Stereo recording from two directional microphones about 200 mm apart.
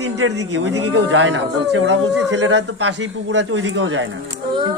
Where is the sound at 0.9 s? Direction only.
80° right.